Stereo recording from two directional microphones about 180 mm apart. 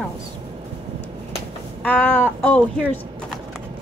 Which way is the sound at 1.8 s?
5° left (ahead or behind).